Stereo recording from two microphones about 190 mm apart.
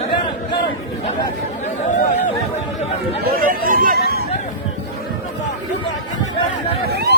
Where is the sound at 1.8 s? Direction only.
40° left (ahead or behind).